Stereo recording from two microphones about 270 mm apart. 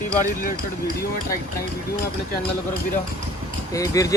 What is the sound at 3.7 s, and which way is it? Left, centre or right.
Speech, centre.